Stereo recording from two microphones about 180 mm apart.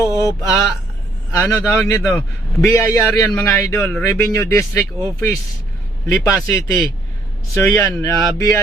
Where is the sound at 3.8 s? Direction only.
5° left (ahead or behind).